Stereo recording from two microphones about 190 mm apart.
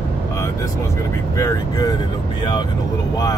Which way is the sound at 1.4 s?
20° left (ahead or behind).